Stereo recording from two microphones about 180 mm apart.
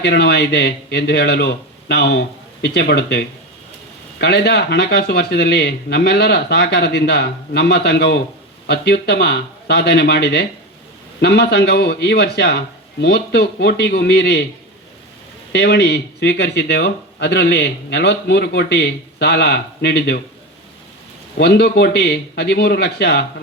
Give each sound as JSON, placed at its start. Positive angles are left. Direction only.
{"t": 0.0, "sound": "a man's voice", "side_deg": 65}
{"t": 15.5, "sound": "speech", "side_deg": 65}
{"t": 21.3, "sound": "a man's voice", "side_deg": 65}